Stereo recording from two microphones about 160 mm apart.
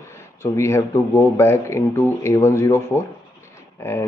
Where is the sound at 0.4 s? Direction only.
15° left (ahead or behind).